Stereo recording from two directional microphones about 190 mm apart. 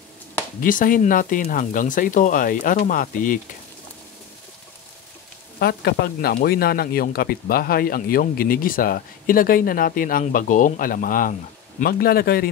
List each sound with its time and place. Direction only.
0.6 s speech: 45° left (ahead or behind)
5.6 s speech: 60° left (ahead or behind)